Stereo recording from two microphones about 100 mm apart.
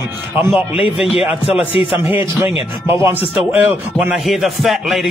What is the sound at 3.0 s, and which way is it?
Speech, 20° right (ahead or behind).